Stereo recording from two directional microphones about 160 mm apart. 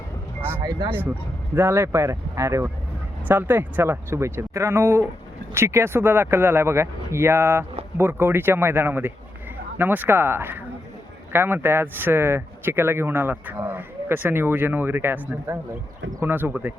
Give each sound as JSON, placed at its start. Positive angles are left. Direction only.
{"t": 0.6, "sound": "speech", "side_deg": -25}
{"t": 0.9, "sound": "speech", "side_deg": -10}